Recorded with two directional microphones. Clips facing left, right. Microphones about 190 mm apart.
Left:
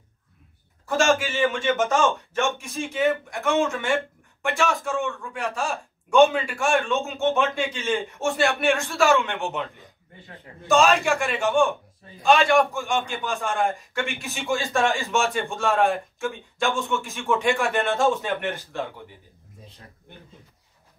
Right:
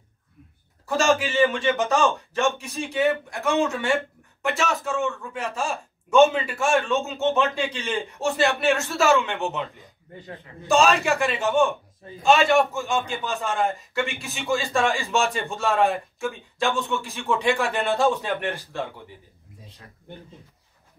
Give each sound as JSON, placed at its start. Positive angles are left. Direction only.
{"t": 0.8, "sound": "a man's voice", "side_deg": 0}
{"t": 10.7, "sound": "a man's voice", "side_deg": 0}
{"t": 11.3, "sound": "a man's voice", "side_deg": -20}
{"t": 12.3, "sound": "a man's voice", "side_deg": -5}